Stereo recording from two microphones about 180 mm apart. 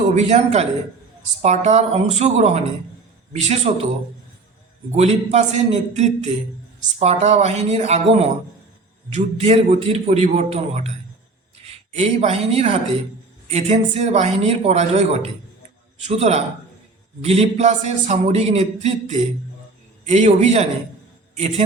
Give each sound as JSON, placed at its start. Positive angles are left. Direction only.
{"t": 0.1, "sound": "a man's voice", "side_deg": -40}
{"t": 3.7, "sound": "a man's voice", "side_deg": -40}
{"t": 4.9, "sound": "a man's voice", "side_deg": -35}
{"t": 21.3, "sound": "music", "side_deg": -35}